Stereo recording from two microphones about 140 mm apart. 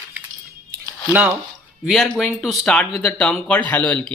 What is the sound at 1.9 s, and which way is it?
Speech, centre (ahead or behind).